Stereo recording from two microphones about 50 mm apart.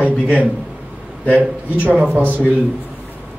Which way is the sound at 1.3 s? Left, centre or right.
Right.